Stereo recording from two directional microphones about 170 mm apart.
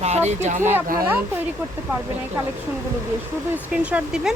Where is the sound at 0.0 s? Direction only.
40° right (ahead or behind).